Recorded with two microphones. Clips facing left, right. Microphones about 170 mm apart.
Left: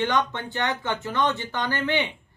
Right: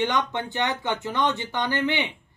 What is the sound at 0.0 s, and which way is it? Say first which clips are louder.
Speech: even; 15° right (ahead or behind).